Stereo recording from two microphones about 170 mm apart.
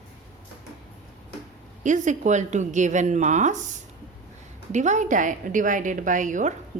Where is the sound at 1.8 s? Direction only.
45° right (ahead or behind).